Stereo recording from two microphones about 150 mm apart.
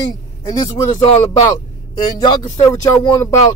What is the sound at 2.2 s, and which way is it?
Speech, 25° left (ahead or behind).